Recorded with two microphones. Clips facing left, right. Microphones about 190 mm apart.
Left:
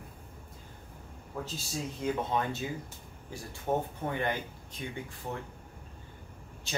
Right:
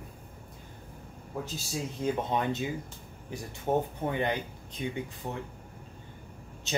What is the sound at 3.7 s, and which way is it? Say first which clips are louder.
Speech: right 3 dB; 20° right (ahead or behind).